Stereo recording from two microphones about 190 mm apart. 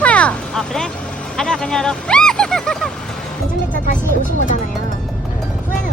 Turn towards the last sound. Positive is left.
turn(degrees=45)  # may be behind; listen again after turning